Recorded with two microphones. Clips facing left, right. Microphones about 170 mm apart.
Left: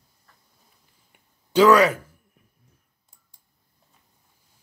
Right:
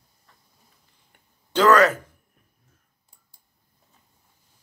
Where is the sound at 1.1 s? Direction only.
10° left (ahead or behind).